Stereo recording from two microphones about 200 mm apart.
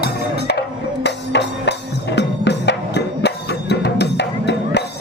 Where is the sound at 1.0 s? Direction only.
60° left (ahead or behind).